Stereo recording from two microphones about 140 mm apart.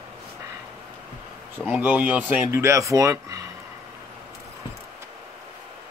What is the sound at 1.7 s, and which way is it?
Speech, 10° right (ahead or behind).